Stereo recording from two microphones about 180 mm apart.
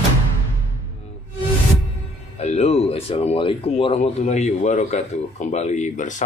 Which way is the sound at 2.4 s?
35° left (ahead or behind).